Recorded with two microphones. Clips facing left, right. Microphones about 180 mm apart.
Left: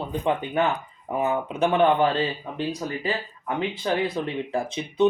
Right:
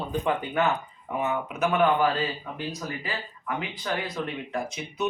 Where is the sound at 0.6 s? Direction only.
30° left (ahead or behind).